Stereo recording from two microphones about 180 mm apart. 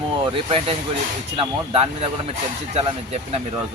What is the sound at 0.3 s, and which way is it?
Speech, 30° right (ahead or behind).